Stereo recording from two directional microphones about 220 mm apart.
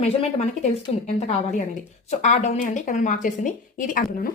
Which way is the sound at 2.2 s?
35° left (ahead or behind).